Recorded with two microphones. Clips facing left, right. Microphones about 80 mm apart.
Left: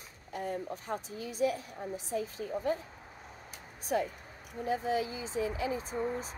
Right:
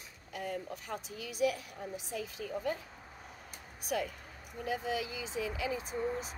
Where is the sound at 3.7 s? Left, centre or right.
Left.